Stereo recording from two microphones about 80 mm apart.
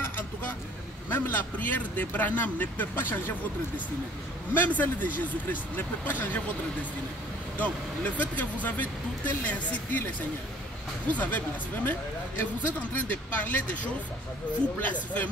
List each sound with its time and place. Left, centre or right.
1.1 s speech: left
4.6 s speech: left
11.1 s speech: left
14.8 s speech: centre